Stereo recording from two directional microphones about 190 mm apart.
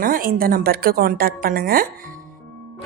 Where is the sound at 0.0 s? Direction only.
50° right (ahead or behind).